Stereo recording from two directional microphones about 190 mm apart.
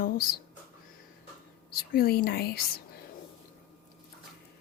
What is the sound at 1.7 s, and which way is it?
Speech, 50° left (ahead or behind).